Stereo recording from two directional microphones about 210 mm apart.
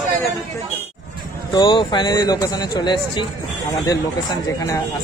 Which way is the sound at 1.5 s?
20° left (ahead or behind).